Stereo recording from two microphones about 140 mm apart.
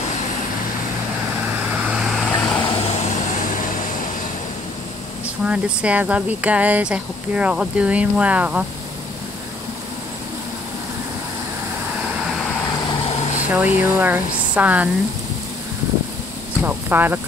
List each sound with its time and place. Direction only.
1.9 s vehicle: centre (ahead or behind)
3.1 s vehicle: 65° left (ahead or behind)
5.4 s speech: 10° right (ahead or behind)
12.3 s vehicle: centre (ahead or behind)
13.5 s speech: 10° right (ahead or behind)
16.6 s speech: 15° right (ahead or behind)